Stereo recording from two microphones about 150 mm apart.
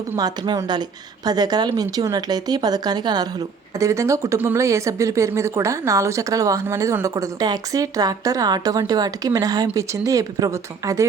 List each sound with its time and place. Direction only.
0.2 s speech: 25° right (ahead or behind)